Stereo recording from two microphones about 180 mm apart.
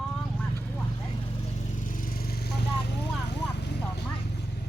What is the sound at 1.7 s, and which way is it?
Vehicle, 45° left (ahead or behind).